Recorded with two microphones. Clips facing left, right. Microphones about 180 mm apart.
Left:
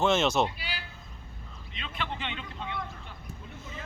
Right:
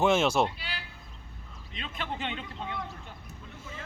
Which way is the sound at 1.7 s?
40° right (ahead or behind).